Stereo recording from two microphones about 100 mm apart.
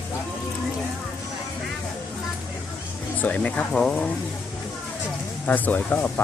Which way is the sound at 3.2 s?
15° left (ahead or behind).